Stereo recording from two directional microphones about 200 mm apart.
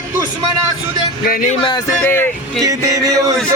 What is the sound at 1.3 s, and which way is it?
Speech, 45° left (ahead or behind).